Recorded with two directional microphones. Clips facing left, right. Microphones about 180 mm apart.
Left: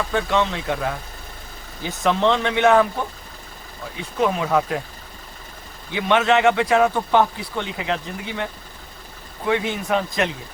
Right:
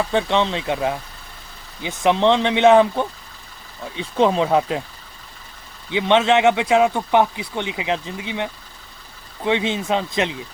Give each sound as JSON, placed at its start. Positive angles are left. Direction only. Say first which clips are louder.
{"t": 0.1, "sound": "speech", "louder": "right 2 dB", "side_deg": -25}
{"t": 3.9, "sound": "speech", "louder": "right 4 dB", "side_deg": -25}
{"t": 5.9, "sound": "speech", "louder": "right 2 dB", "side_deg": -20}
{"t": 9.5, "sound": "speech", "louder": "right 1 dB", "side_deg": -20}